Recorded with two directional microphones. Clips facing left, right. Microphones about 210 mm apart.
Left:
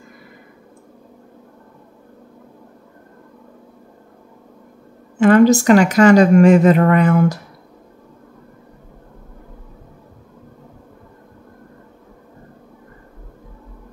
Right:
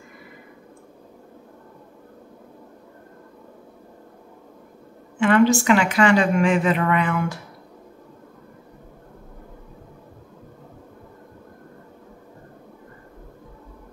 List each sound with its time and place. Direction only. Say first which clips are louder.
5.2 s speech: left 6 dB; 40° left (ahead or behind)